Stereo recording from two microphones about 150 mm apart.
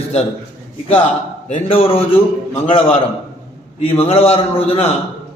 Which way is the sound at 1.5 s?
35° left (ahead or behind).